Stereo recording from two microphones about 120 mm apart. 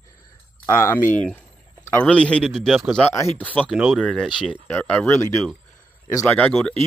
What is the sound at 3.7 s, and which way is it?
Speech, 5° right (ahead or behind).